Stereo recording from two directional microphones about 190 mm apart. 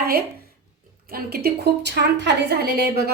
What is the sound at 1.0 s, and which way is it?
A woman's voice, 55° right (ahead or behind).